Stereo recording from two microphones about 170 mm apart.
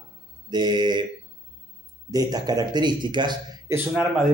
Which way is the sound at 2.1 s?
20° right (ahead or behind).